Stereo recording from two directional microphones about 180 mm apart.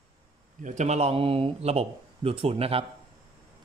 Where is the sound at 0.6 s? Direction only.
40° right (ahead or behind).